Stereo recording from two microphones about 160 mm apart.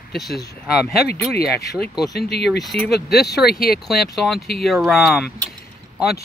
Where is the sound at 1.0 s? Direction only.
75° left (ahead or behind).